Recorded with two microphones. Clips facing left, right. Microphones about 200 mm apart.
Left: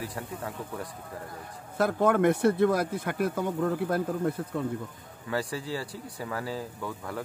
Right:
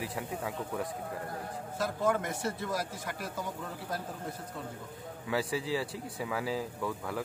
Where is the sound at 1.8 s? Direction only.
60° left (ahead or behind).